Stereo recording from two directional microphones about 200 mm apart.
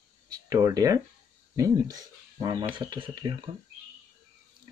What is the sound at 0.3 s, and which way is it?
Speech, 15° right (ahead or behind).